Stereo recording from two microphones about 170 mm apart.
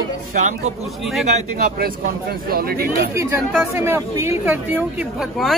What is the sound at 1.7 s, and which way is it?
Speech, 60° right (ahead or behind).